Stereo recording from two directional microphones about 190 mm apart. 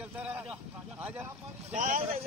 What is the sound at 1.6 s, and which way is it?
Speech, 40° right (ahead or behind).